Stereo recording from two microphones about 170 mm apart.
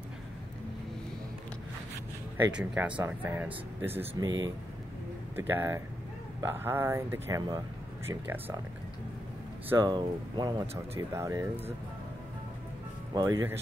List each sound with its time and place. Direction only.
2.5 s speech: 10° right (ahead or behind)
4.1 s speech: 25° right (ahead or behind)
5.3 s speech: 10° right (ahead or behind)
9.8 s speech: 25° right (ahead or behind)
13.1 s speech: 20° right (ahead or behind)